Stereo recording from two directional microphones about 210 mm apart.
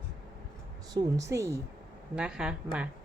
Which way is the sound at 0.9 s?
15° right (ahead or behind).